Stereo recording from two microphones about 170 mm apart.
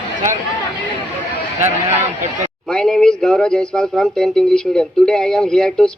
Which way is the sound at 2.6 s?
5° left (ahead or behind).